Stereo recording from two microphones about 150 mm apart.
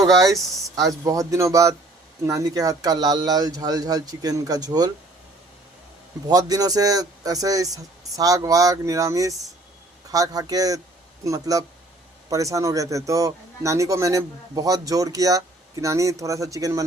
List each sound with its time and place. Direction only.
0.3 s speech: centre (ahead or behind)
0.8 s speech: 25° right (ahead or behind)
6.2 s speech: 25° right (ahead or behind)